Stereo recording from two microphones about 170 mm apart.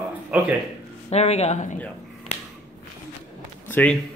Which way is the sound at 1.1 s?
40° left (ahead or behind).